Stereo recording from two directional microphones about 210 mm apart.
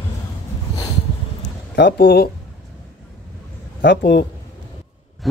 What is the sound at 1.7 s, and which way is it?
Speech, 55° left (ahead or behind).